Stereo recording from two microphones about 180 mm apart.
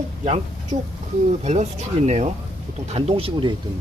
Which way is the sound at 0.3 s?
35° right (ahead or behind).